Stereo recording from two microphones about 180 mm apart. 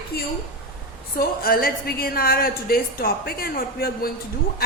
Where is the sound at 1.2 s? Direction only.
55° left (ahead or behind).